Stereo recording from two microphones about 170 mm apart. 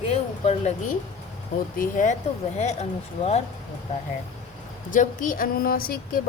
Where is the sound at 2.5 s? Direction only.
40° left (ahead or behind).